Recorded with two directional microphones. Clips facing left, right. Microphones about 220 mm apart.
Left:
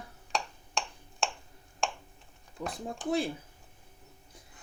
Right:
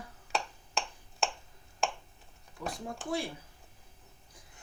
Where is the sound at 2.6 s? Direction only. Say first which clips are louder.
Left 3 dB; 15° left (ahead or behind).